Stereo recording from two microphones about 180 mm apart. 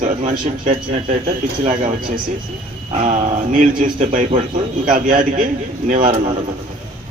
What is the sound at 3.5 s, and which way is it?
A man's voice, 45° right (ahead or behind).